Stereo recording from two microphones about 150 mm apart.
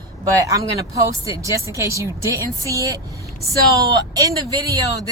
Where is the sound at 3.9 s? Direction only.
25° right (ahead or behind).